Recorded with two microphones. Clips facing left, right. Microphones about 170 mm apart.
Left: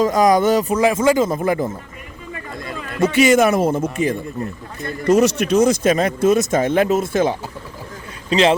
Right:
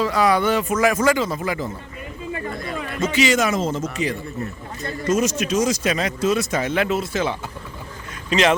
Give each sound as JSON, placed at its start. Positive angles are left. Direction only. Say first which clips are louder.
{"t": 0.0, "sound": "speech", "louder": "left 4 dB", "side_deg": 45}
{"t": 1.1, "sound": "speech", "louder": "left 6 dB", "side_deg": 50}
{"t": 3.0, "sound": "speech", "louder": "left 6 dB", "side_deg": 55}
{"t": 5.0, "sound": "speech", "louder": "left 6 dB", "side_deg": 65}
{"t": 8.3, "sound": "speech", "louder": "left 3 dB", "side_deg": 30}